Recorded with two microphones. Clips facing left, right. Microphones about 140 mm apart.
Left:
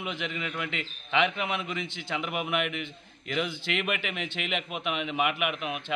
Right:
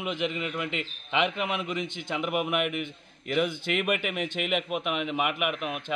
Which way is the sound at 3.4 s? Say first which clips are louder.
Right 3 dB; 50° right (ahead or behind).